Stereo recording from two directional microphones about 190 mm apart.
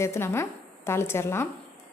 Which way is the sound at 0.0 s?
15° left (ahead or behind).